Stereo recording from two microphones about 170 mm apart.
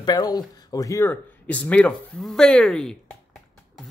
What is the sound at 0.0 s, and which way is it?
Speech, 25° left (ahead or behind).